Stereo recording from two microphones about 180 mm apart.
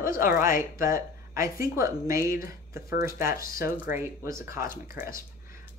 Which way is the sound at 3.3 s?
50° left (ahead or behind).